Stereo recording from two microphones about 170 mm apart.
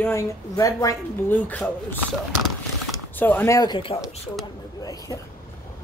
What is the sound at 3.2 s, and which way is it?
Speech, 10° left (ahead or behind).